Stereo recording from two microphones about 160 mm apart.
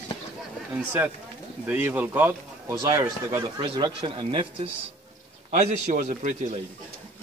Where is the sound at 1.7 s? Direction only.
10° right (ahead or behind).